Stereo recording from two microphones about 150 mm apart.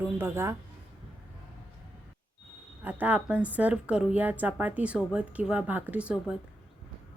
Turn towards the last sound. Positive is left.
turn(degrees=-10)  # may be behind; listen again after turning